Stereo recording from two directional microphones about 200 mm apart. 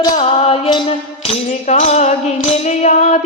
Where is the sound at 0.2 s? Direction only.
30° left (ahead or behind).